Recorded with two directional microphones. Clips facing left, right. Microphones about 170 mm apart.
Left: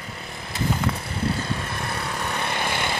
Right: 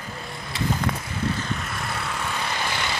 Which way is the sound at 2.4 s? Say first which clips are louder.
Left 2 dB; 55° left (ahead or behind).